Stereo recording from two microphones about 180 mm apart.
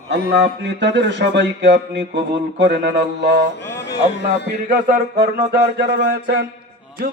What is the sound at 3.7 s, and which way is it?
Speech, 70° left (ahead or behind).